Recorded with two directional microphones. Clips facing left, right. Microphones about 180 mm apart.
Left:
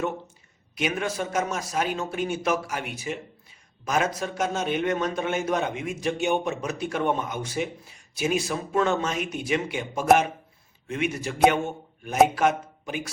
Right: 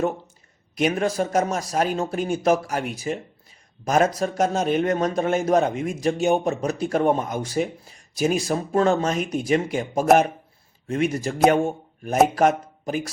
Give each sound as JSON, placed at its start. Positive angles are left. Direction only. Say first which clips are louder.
{"t": 0.8, "sound": "a man's voice", "louder": "right 6 dB", "side_deg": -35}